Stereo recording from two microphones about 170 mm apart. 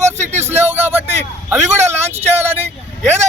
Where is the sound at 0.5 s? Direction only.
10° right (ahead or behind).